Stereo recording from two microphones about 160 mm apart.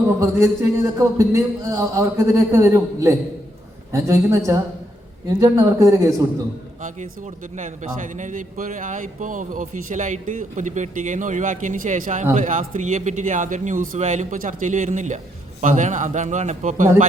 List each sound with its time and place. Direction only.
0.2 s speech: 20° right (ahead or behind)
6.8 s a man's voice: 50° right (ahead or behind)